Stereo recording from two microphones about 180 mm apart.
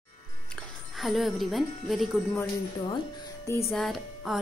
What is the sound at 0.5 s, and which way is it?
Speech, centre (ahead or behind).